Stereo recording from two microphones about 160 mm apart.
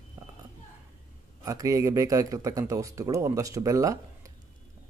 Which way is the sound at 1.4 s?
20° right (ahead or behind).